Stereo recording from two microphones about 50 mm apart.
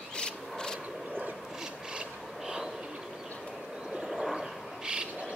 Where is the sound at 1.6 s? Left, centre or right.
Centre.